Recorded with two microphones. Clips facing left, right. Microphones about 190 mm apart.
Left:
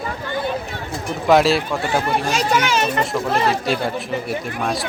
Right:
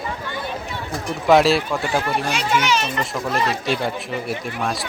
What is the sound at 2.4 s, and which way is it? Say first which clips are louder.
Speech: left 2 dB; 40° left (ahead or behind).